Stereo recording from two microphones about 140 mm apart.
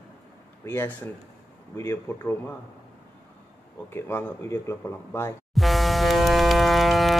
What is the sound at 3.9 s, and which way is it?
Speech, 15° left (ahead or behind).